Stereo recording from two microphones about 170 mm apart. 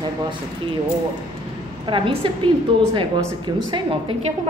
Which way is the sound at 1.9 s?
30° right (ahead or behind).